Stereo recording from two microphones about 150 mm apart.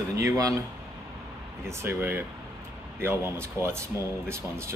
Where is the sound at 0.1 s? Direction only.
20° right (ahead or behind).